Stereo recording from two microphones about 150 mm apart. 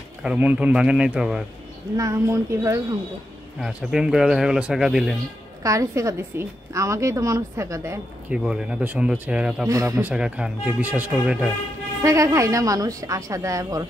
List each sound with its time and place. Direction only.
0.2 s speech: 10° right (ahead or behind)
2.0 s a woman's voice: 20° right (ahead or behind)
3.5 s a man's voice: 5° right (ahead or behind)
5.6 s a woman's voice: 20° right (ahead or behind)
8.3 s speech: 5° right (ahead or behind)
9.7 s a woman's voice: 20° right (ahead or behind)
10.0 s speech: 5° right (ahead or behind)
12.0 s a woman's voice: 20° right (ahead or behind)